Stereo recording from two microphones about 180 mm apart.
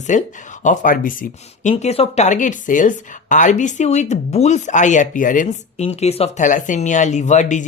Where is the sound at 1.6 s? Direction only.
35° left (ahead or behind).